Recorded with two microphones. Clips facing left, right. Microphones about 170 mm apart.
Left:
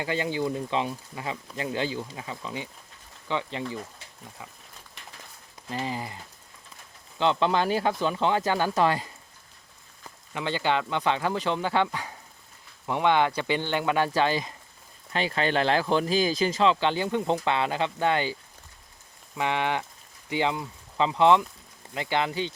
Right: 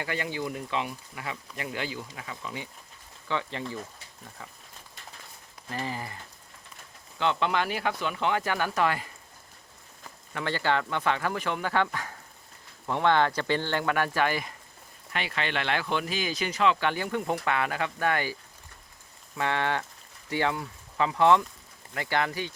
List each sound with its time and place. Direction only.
0.0 s speech: 20° left (ahead or behind)
5.6 s speech: 20° left (ahead or behind)
7.2 s speech: 30° left (ahead or behind)
10.3 s speech: 20° left (ahead or behind)
19.4 s speech: 15° left (ahead or behind)